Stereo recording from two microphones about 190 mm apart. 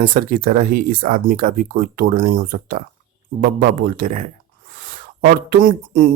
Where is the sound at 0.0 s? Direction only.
45° right (ahead or behind).